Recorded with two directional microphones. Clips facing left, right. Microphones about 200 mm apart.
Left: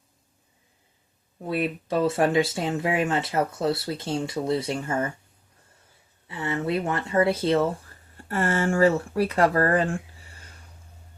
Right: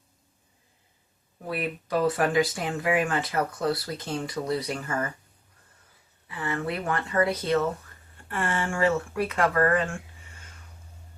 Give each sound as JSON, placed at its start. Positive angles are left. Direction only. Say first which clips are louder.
{"t": 1.5, "sound": "speech", "louder": "left 4 dB", "side_deg": 25}
{"t": 6.2, "sound": "speech", "louder": "left 3 dB", "side_deg": 25}